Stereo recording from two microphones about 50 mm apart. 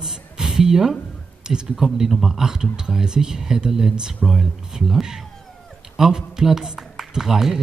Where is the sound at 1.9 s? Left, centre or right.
Centre.